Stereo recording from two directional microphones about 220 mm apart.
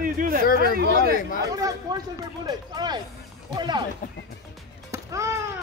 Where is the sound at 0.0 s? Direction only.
40° right (ahead or behind).